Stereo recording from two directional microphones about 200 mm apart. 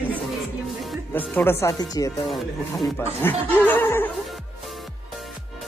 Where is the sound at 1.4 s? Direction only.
10° left (ahead or behind).